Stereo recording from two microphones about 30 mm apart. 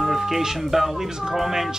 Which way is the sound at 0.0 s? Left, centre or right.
Centre.